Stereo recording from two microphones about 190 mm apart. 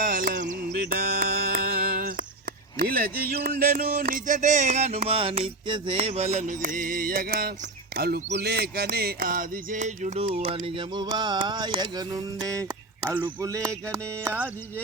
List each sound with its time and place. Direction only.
0.0 s music: 45° right (ahead or behind)
7.9 s a sound: 55° right (ahead or behind); by 12.7 s 20° right (ahead or behind)
13.1 s speech: 10° right (ahead or behind)